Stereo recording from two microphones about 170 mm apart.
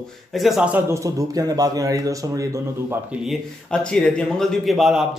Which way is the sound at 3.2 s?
5° left (ahead or behind).